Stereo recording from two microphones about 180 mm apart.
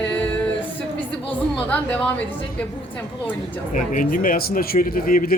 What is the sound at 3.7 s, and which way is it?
Speech, 50° left (ahead or behind).